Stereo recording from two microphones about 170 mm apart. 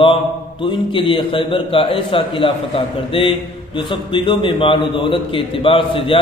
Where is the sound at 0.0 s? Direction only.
30° left (ahead or behind).